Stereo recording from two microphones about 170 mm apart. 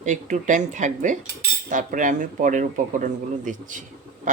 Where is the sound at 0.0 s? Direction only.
45° right (ahead or behind).